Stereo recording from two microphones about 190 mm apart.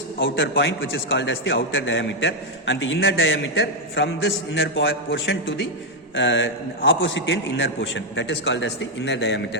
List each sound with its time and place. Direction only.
0.2 s a man's voice: 75° left (ahead or behind)